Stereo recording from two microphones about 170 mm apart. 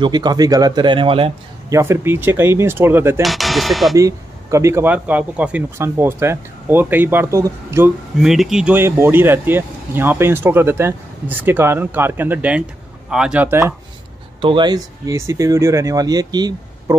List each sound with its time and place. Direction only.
0.0 s speech: 25° right (ahead or behind)
1.7 s speech: 15° right (ahead or behind)
3.2 s speech: centre (ahead or behind)
3.9 s speech: 20° right (ahead or behind)
8.2 s speech: centre (ahead or behind)
14.4 s speech: 30° right (ahead or behind)